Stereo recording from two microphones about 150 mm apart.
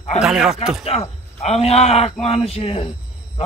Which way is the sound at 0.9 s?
45° left (ahead or behind).